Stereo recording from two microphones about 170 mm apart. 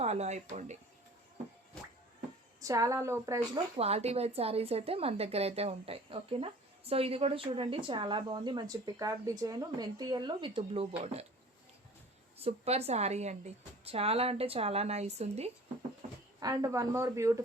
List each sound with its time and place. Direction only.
0.0 s speech: 40° right (ahead or behind)
2.6 s a woman's voice: 20° right (ahead or behind)
3.5 s a woman's voice: 35° right (ahead or behind)
12.4 s a woman's voice: 40° right (ahead or behind)
16.4 s speech: 20° right (ahead or behind)